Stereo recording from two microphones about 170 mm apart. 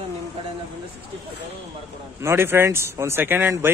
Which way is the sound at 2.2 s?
15° right (ahead or behind).